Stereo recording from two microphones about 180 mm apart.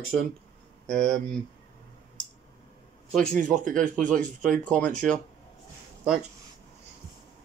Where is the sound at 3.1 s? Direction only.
5° left (ahead or behind).